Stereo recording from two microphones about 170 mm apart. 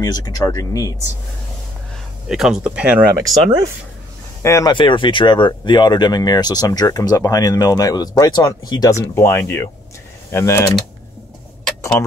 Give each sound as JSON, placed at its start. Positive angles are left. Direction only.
{"t": 0.0, "sound": "speech", "side_deg": 20}
{"t": 2.2, "sound": "speech", "side_deg": -5}
{"t": 4.4, "sound": "speech", "side_deg": 15}
{"t": 10.3, "sound": "typing", "side_deg": 15}